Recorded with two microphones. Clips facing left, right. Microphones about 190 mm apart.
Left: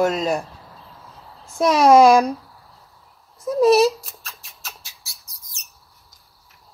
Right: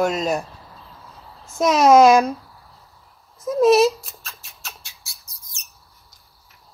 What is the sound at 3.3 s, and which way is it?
Rodents, centre (ahead or behind).